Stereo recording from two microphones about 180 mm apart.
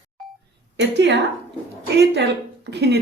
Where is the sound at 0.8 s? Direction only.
75° right (ahead or behind).